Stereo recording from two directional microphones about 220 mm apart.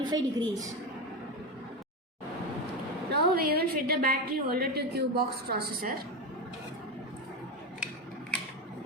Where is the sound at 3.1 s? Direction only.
45° right (ahead or behind).